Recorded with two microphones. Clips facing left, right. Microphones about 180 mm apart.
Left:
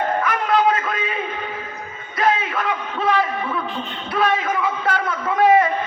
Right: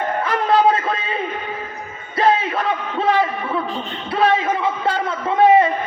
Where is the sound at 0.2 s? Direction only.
30° right (ahead or behind).